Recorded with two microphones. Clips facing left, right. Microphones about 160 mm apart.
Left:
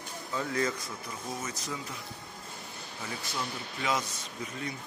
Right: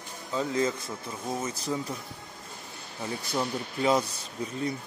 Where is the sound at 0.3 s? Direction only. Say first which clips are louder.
Right 4 dB; 20° right (ahead or behind).